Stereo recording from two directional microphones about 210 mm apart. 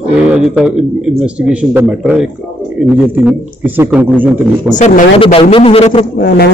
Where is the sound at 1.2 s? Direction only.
5° right (ahead or behind).